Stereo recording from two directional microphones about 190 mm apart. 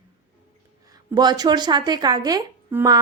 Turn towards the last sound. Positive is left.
turn(degrees=-15)  # may be behind; listen again after turning